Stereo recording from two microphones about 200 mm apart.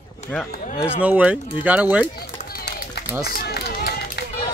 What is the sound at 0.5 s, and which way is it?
Speech, 35° left (ahead or behind).